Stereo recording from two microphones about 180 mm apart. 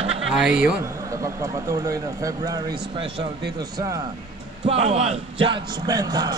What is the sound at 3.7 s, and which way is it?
Speech, 20° right (ahead or behind).